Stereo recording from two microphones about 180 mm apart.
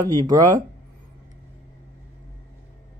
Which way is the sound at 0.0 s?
20° right (ahead or behind).